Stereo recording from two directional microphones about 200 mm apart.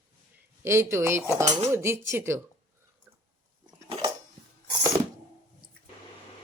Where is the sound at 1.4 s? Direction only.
35° right (ahead or behind).